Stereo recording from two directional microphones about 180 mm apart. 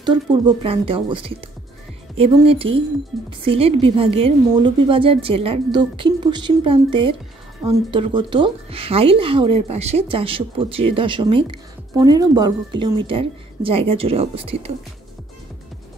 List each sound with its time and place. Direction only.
0.0 s speech: 25° right (ahead or behind)